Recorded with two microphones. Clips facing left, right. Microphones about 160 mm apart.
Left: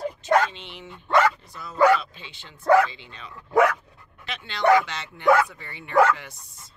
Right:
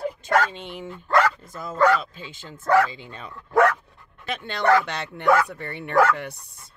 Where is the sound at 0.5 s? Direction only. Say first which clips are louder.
Right 6 dB; 45° right (ahead or behind).